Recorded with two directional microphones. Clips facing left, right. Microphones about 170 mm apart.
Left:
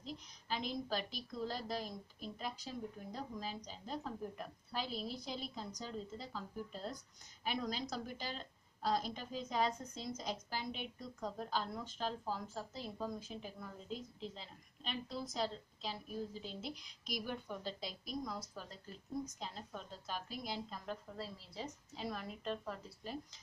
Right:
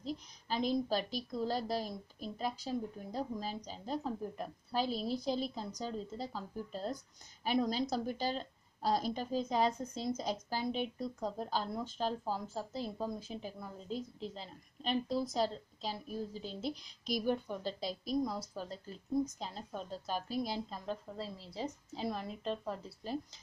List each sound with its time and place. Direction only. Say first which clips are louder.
0.0 s a woman's voice: right 7 dB; 35° right (ahead or behind)